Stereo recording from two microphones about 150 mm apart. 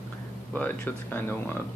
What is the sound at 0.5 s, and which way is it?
Speech, 10° left (ahead or behind).